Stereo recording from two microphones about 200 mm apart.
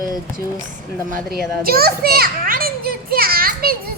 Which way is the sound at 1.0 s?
45° right (ahead or behind).